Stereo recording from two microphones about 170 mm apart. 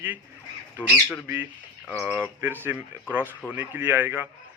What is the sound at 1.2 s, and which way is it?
Speech, 10° right (ahead or behind).